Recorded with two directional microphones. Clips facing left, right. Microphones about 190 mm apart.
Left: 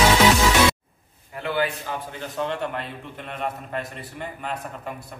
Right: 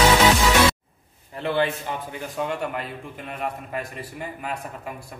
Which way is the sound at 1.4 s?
30° right (ahead or behind).